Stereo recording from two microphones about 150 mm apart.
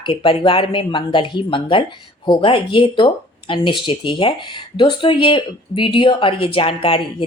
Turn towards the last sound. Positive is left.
turn(degrees=40)  # may be behind; listen again after turning